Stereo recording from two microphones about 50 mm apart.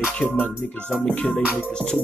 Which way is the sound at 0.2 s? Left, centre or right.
Centre.